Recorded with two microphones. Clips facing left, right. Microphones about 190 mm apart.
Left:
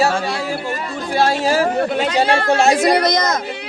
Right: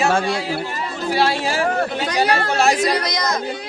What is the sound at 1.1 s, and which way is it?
Speech, 45° left (ahead or behind).